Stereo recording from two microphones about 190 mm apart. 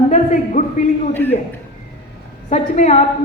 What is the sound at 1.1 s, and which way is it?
Speech, 10° left (ahead or behind).